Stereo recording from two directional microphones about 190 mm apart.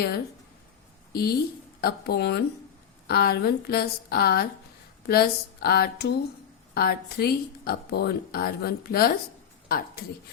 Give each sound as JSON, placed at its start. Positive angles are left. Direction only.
{"t": 1.1, "sound": "a woman's voice", "side_deg": 55}